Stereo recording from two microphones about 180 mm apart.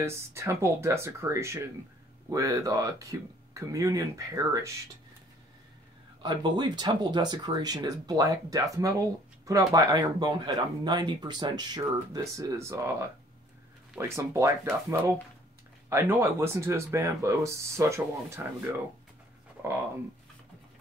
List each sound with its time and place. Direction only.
0.0 s speech: 15° right (ahead or behind)
6.2 s speech: 25° right (ahead or behind)